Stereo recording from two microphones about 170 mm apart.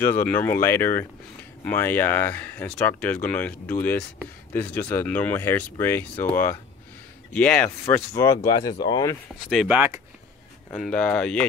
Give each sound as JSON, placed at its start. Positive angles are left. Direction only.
{"t": 0.0, "sound": "speech", "side_deg": 10}
{"t": 9.5, "sound": "speech", "side_deg": -5}
{"t": 10.7, "sound": "speech", "side_deg": 10}